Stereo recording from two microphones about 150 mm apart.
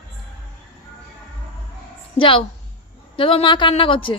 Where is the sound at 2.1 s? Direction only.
35° left (ahead or behind).